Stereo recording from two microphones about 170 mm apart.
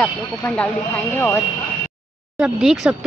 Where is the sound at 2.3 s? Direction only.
5° right (ahead or behind).